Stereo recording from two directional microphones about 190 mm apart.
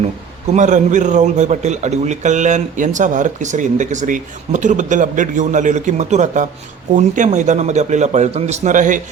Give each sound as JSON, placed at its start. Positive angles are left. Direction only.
{"t": 0.5, "sound": "a man's voice", "side_deg": -40}